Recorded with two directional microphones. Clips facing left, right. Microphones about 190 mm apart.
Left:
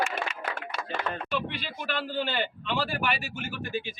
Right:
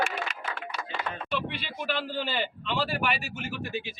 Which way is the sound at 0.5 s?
45° left (ahead or behind).